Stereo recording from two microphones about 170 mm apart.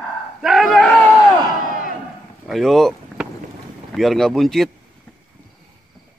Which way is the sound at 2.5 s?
Centre (ahead or behind).